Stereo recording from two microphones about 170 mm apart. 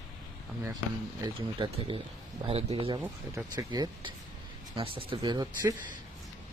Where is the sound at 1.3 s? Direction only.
30° right (ahead or behind).